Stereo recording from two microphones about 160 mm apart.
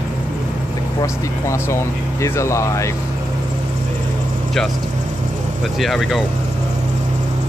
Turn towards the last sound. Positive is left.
turn(degrees=0)  # may be behind; listen again after turning